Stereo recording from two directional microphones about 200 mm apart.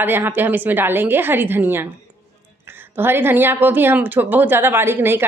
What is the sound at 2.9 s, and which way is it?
A woman's voice, 10° right (ahead or behind).